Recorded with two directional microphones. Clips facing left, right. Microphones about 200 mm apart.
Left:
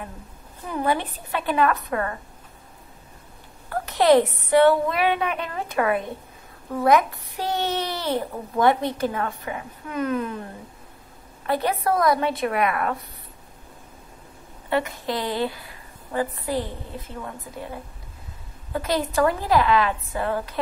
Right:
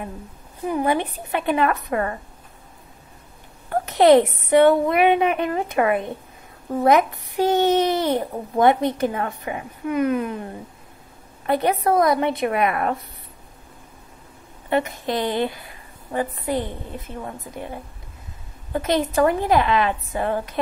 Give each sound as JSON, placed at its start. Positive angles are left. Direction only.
{"t": 0.7, "sound": "a woman's voice", "side_deg": -15}
{"t": 3.8, "sound": "a child's voice", "side_deg": -20}
{"t": 11.4, "sound": "a child's voice", "side_deg": -20}
{"t": 14.7, "sound": "a child's voice", "side_deg": -20}